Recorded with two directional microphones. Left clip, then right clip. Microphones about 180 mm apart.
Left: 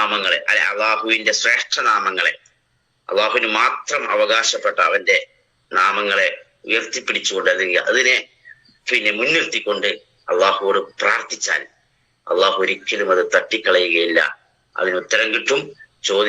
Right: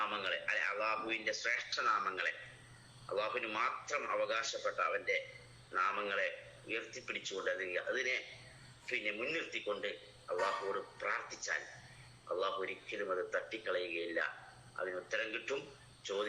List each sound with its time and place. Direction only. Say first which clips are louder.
0.0 s a man's voice: left 19 dB; 60° left (ahead or behind)